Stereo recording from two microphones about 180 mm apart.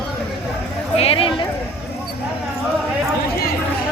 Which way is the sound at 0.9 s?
30° left (ahead or behind).